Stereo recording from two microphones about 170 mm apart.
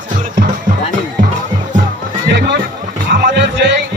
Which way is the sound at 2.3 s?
85° right.